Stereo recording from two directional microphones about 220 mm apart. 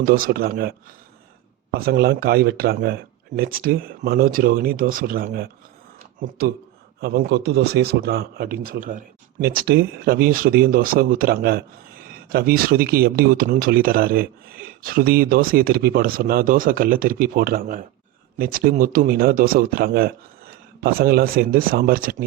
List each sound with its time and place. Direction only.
0.0 s speech: 40° right (ahead or behind)
1.8 s speech: 45° right (ahead or behind)
7.0 s a man's voice: 45° right (ahead or behind)